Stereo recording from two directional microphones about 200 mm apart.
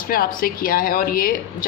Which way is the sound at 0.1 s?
45° left (ahead or behind).